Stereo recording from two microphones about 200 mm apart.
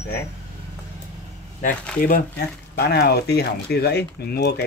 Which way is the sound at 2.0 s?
45° left (ahead or behind).